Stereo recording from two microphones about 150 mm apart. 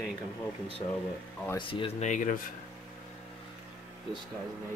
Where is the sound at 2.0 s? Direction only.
60° left (ahead or behind).